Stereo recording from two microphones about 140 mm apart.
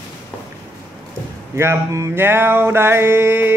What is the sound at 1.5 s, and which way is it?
Music, 20° right (ahead or behind).